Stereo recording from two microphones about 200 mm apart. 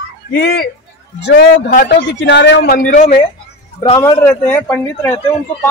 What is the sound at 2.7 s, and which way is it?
Speech, 45° left (ahead or behind).